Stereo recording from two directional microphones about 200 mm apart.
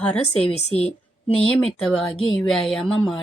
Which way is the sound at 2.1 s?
25° left (ahead or behind).